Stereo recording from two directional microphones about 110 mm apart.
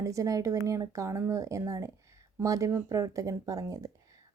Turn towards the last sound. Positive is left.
turn(degrees=-30)  # may be behind; listen again after turning